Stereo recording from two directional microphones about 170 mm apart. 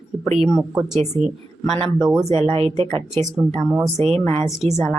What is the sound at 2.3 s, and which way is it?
A woman's voice, 35° right (ahead or behind).